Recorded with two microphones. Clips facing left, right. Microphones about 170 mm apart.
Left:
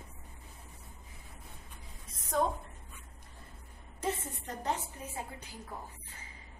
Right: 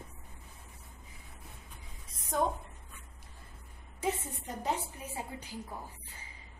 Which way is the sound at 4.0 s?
10° right (ahead or behind).